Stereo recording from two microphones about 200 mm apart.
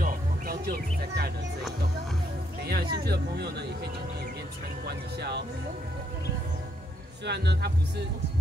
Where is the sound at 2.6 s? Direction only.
50° right (ahead or behind).